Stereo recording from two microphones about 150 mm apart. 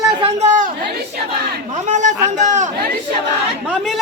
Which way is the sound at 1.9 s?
55° right (ahead or behind).